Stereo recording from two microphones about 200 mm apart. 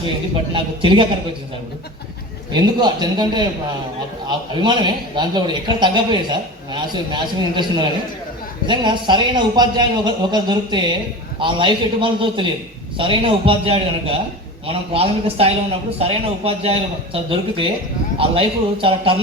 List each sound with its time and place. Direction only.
0.5 s a man's voice: 25° right (ahead or behind)
2.5 s a man's voice: 20° right (ahead or behind)
18.2 s a man's voice: 25° right (ahead or behind)